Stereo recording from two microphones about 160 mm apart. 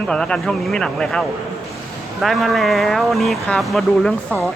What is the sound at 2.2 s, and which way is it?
A man's voice, centre (ahead or behind).